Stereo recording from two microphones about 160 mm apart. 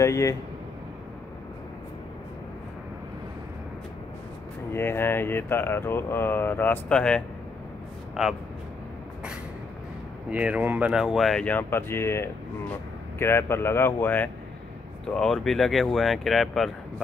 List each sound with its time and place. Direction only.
0.0 s speech: 20° left (ahead or behind)
4.7 s speech: 15° left (ahead or behind); by 8.3 s 5° right (ahead or behind)
10.3 s speech: 10° right (ahead or behind)